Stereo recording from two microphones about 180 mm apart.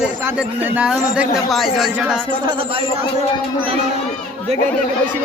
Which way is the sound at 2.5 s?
30° right (ahead or behind).